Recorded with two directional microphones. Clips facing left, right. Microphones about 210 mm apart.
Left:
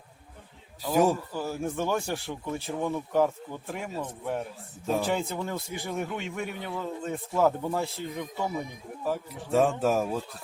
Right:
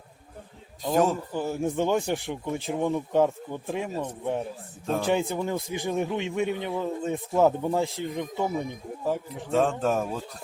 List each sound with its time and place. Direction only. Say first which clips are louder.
1.1 s speech: right 3 dB; 20° right (ahead or behind)
9.5 s speech: even; 5° left (ahead or behind)